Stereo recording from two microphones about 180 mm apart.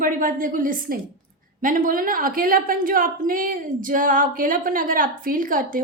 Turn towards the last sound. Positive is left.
turn(degrees=-50)  # may be behind; listen again after turning